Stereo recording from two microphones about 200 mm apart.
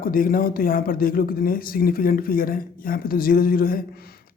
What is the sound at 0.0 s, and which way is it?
Speech, 45° left (ahead or behind).